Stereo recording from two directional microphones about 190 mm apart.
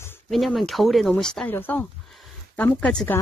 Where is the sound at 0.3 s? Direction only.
Centre (ahead or behind).